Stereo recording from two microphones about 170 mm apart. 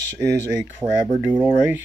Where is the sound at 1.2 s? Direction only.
10° right (ahead or behind).